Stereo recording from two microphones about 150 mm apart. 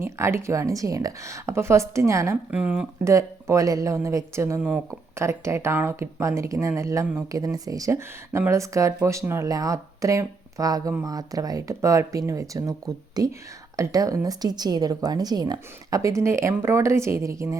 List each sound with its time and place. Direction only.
0.0 s speech: 15° right (ahead or behind)
3.0 s speech: 20° right (ahead or behind)